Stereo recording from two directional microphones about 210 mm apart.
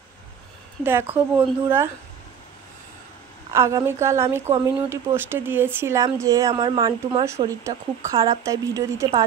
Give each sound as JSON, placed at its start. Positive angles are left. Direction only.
{"t": 0.8, "sound": "a woman's voice", "side_deg": -10}
{"t": 3.5, "sound": "a woman's voice", "side_deg": -15}